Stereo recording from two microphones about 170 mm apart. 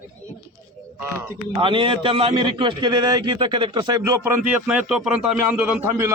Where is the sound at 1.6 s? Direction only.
30° right (ahead or behind).